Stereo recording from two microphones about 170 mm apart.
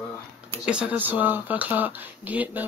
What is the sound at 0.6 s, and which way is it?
Speech, 5° right (ahead or behind).